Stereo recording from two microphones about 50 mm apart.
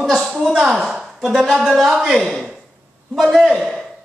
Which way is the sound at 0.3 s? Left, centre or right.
Centre.